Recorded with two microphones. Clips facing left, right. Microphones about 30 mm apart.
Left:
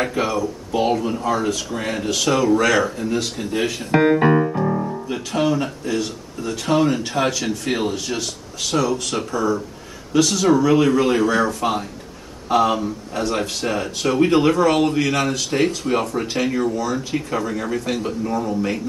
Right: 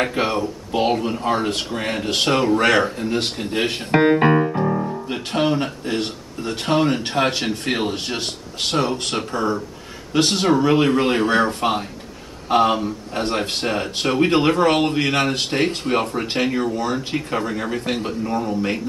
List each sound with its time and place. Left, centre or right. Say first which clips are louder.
0.2 s speech: even; right
3.9 s piano: even; right
5.0 s speech: left 1 dB; right
16.4 s a man's voice: left 1 dB; right
16.7 s speech: even; right
18.4 s a man's voice: even; right